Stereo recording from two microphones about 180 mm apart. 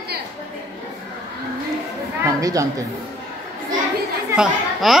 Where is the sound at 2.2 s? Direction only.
20° right (ahead or behind).